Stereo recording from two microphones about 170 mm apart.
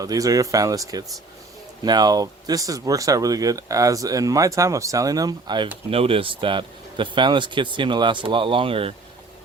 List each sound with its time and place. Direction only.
0.0 s speech: 20° right (ahead or behind)